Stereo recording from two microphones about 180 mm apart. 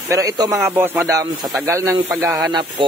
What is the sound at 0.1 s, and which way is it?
Speech, 20° right (ahead or behind).